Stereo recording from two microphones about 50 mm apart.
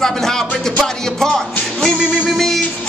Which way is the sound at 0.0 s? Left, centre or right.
Centre.